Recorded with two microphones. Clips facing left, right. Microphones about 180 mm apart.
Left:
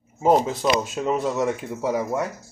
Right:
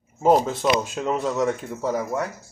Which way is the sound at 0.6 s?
5° left (ahead or behind).